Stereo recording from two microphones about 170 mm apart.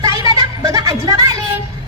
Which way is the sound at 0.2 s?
25° right (ahead or behind).